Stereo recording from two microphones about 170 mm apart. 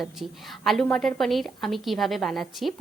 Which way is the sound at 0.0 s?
Centre (ahead or behind).